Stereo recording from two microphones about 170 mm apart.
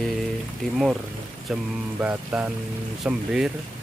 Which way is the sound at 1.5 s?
5° right (ahead or behind).